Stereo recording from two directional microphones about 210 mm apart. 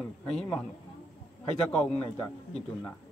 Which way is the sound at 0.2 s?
5° left (ahead or behind).